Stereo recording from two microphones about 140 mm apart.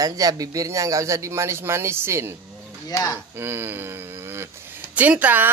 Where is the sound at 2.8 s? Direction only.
25° left (ahead or behind).